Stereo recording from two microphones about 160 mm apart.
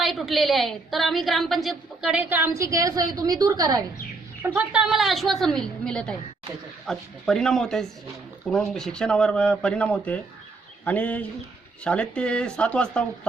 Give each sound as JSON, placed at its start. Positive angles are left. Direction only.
{"t": 0.0, "sound": "a woman's voice", "side_deg": 0}
{"t": 4.4, "sound": "a woman's voice", "side_deg": -10}